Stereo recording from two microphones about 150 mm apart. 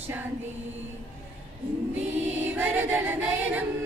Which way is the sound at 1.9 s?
10° right (ahead or behind).